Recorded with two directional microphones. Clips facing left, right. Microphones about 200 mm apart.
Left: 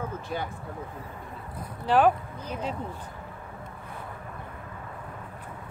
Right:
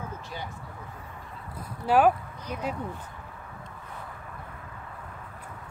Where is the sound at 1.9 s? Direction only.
10° right (ahead or behind).